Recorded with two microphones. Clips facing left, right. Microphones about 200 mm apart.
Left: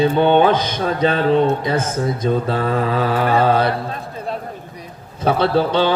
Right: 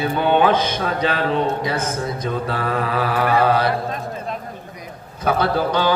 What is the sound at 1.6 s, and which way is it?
Mantra, 25° left (ahead or behind).